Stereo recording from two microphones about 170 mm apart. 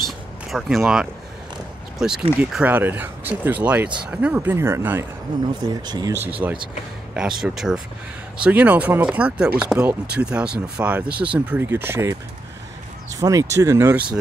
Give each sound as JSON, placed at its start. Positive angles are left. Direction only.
{"t": 0.0, "sound": "a sound", "side_deg": 0}
{"t": 2.0, "sound": "speech", "side_deg": -5}
{"t": 5.7, "sound": "speech", "side_deg": -25}